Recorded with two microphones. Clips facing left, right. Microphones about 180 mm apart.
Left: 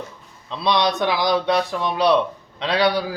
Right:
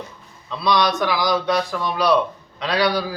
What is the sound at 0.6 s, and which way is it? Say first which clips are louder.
Speech: even; 25° left (ahead or behind).